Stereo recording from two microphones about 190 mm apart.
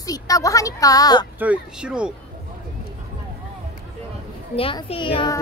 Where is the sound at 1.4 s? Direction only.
5° right (ahead or behind).